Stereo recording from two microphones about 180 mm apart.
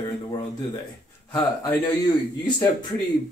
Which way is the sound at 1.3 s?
20° left (ahead or behind).